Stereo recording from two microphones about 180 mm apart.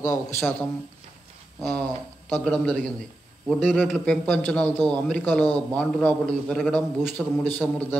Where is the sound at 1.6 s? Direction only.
10° left (ahead or behind).